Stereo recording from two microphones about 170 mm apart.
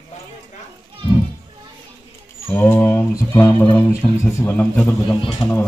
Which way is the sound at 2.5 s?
10° left (ahead or behind).